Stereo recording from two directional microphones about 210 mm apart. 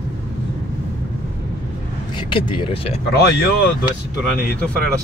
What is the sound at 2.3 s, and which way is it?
Speech, 25° left (ahead or behind).